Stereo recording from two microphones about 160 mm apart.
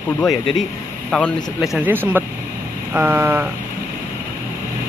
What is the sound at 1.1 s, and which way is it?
Speech, centre (ahead or behind).